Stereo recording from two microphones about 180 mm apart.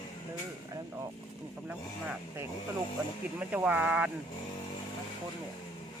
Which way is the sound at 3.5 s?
10° right (ahead or behind).